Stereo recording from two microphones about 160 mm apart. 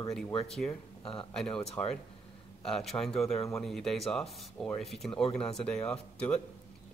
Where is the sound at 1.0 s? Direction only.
35° left (ahead or behind).